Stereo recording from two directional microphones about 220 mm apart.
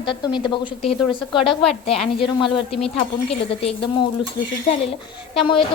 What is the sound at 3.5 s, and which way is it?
Speech, 25° left (ahead or behind).